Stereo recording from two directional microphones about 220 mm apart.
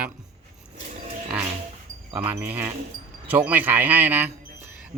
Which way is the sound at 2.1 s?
10° right (ahead or behind).